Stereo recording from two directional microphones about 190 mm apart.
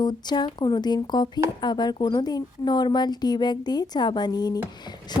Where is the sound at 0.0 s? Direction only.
20° left (ahead or behind).